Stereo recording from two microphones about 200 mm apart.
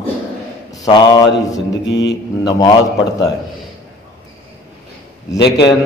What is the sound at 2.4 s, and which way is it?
Speech, 20° left (ahead or behind).